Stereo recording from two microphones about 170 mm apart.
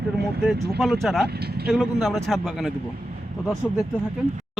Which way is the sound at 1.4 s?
70° right (ahead or behind).